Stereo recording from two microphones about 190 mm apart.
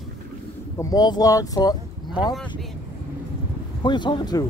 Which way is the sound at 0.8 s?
20° left (ahead or behind).